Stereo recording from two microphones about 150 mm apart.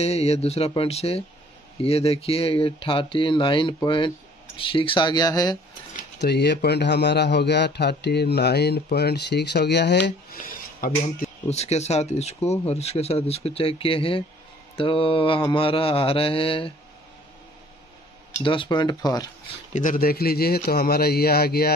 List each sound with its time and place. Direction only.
0.0 s speech: 45° left (ahead or behind); by 5.6 s 25° left (ahead or behind)
6.2 s a man's voice: 90° left; by 11.2 s 70° left (ahead or behind)
11.4 s speech: 45° left (ahead or behind)
18.4 s speech: 35° left (ahead or behind)
19.7 s a man's voice: 60° left (ahead or behind); by 21.7 s 90° left